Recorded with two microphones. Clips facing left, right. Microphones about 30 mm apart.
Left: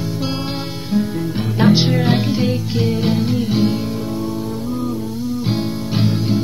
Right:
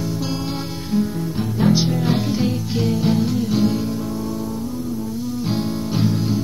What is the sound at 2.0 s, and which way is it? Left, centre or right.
Music, left.